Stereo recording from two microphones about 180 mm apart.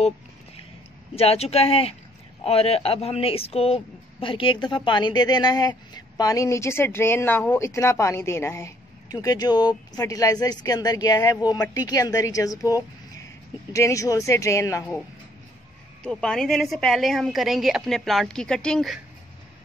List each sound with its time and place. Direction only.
1.1 s speech: 35° left (ahead or behind); by 15.0 s 15° left (ahead or behind)
16.0 s a woman's voice: 5° left (ahead or behind)